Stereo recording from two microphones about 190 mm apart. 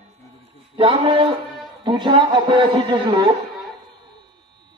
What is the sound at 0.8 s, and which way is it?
A man's voice, 30° right (ahead or behind).